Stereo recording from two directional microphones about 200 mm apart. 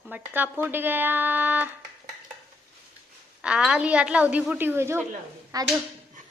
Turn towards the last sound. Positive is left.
turn(degrees=-20)  # may be behind; listen again after turning